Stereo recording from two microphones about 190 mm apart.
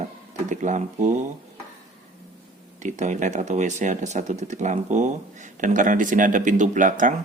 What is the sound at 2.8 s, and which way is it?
Speech, 40° right (ahead or behind).